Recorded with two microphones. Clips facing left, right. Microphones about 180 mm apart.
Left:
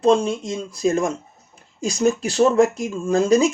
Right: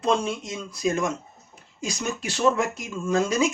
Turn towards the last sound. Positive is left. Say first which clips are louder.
# left 6 dB
turn(degrees=35)  # may be behind; listen again after turning